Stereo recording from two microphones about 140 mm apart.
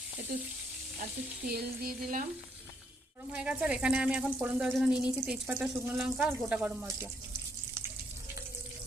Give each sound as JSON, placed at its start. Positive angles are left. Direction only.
{"t": 0.3, "sound": "speech", "side_deg": -90}
{"t": 3.3, "sound": "speech", "side_deg": -10}